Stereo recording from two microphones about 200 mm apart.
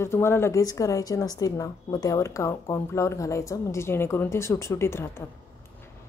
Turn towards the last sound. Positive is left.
turn(degrees=10)  # may be behind; listen again after turning